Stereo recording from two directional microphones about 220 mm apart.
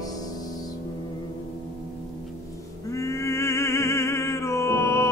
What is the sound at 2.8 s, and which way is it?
Music, 15° left (ahead or behind).